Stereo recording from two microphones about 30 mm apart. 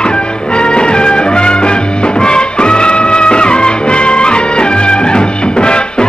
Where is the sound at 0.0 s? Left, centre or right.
Left.